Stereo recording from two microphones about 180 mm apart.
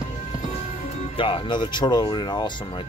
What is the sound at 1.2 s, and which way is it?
Speech, 30° left (ahead or behind).